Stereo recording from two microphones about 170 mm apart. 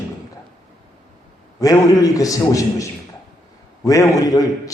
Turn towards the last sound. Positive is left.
turn(degrees=20)  # may be behind; listen again after turning